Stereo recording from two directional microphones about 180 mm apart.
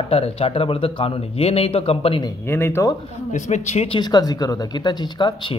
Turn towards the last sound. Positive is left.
turn(degrees=25)  # may be behind; listen again after turning